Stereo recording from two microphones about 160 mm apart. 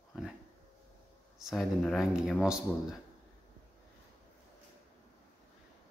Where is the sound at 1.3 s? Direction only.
Centre (ahead or behind).